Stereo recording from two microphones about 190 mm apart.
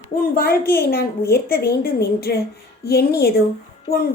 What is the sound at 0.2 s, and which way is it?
A woman's voice, 50° left (ahead or behind).